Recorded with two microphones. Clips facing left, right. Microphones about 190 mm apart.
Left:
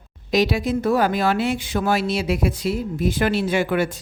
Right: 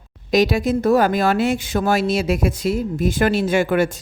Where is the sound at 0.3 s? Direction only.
45° right (ahead or behind).